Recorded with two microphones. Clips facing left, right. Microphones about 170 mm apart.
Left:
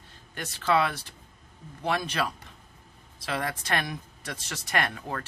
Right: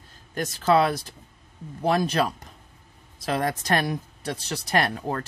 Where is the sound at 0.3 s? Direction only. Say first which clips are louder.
Right 5 dB; 40° right (ahead or behind).